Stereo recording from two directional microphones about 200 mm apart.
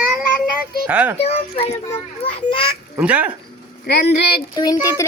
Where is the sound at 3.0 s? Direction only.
5° right (ahead or behind).